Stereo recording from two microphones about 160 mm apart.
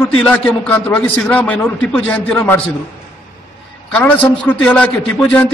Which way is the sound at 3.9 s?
10° left (ahead or behind).